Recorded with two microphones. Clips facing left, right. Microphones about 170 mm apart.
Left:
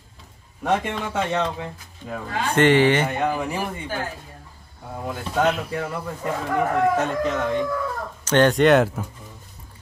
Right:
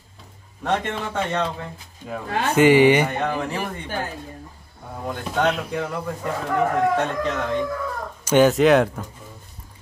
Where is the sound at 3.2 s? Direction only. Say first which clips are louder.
Left 1 dB; 10° left (ahead or behind).